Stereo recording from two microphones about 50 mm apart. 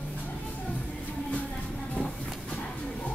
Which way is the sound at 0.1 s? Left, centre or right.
Left.